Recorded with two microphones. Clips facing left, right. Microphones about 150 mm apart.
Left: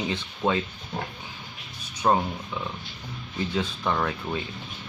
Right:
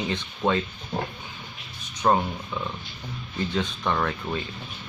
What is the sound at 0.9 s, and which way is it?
Pig, 35° right (ahead or behind).